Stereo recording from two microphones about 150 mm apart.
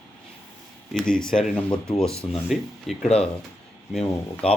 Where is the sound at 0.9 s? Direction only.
5° left (ahead or behind).